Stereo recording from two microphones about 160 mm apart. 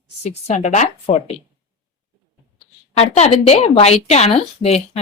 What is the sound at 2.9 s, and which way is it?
Speech, 40° left (ahead or behind).